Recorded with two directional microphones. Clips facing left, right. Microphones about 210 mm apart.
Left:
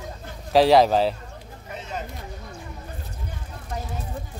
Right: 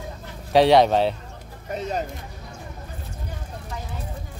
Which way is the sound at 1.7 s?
40° right (ahead or behind).